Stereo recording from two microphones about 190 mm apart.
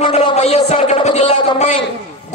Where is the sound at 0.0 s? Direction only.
35° left (ahead or behind).